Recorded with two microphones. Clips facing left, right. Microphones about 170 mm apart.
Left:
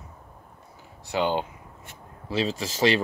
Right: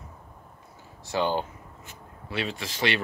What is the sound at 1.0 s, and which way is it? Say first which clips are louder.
Speech: left 1 dB; 15° left (ahead or behind).